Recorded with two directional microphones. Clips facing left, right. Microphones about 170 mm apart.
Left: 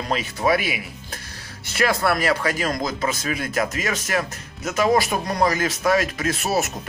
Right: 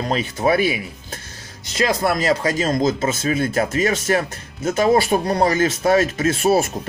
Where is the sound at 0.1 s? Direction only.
30° right (ahead or behind).